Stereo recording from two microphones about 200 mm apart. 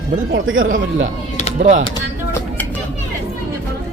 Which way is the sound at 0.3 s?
75° right (ahead or behind).